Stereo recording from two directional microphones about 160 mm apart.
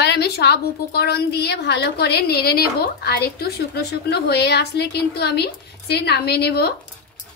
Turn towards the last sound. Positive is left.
turn(degrees=85)